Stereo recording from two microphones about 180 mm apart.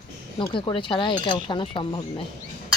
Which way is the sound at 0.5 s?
25° left (ahead or behind).